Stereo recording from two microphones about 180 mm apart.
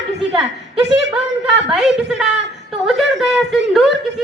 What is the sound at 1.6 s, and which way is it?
A woman's voice, centre (ahead or behind).